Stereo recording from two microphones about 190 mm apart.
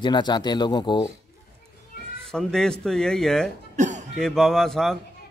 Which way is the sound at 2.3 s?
5° left (ahead or behind).